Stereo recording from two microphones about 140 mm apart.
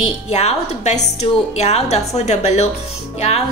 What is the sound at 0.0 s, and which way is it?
A woman's voice, 50° left (ahead or behind).